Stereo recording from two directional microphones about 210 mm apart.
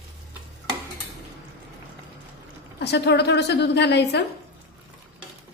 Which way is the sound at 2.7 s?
55° left (ahead or behind).